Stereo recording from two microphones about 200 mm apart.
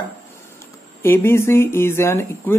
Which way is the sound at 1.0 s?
10° left (ahead or behind).